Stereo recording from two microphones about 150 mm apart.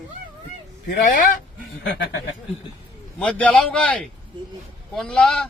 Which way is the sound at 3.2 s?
10° left (ahead or behind).